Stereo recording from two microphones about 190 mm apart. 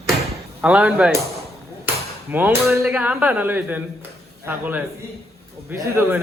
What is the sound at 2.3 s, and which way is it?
Speech, 10° right (ahead or behind).